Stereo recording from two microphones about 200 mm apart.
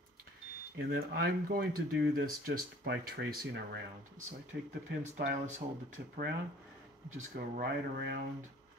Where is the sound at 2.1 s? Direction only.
45° right (ahead or behind).